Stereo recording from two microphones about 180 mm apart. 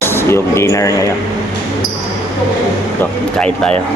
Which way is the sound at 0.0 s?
15° left (ahead or behind).